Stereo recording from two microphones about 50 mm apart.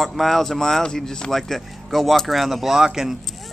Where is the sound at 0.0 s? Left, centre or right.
Centre.